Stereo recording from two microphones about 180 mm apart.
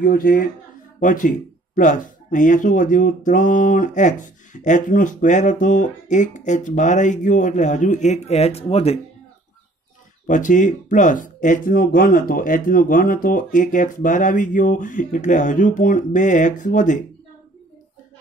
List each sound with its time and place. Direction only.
0.0 s speech: 55° left (ahead or behind); by 9.0 s 35° left (ahead or behind)
10.2 s speech: 45° left (ahead or behind)